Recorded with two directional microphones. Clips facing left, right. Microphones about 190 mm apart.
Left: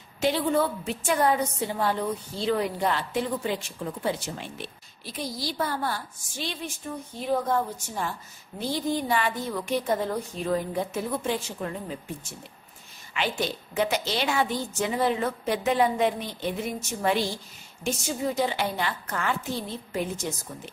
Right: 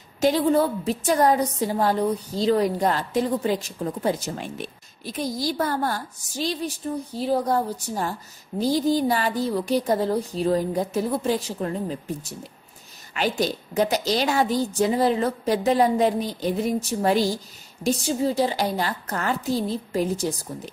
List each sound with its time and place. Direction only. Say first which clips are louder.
0.2 s a woman's voice: right 5 dB; 40° right (ahead or behind)
13.1 s a woman's voice: right 5 dB; 40° right (ahead or behind)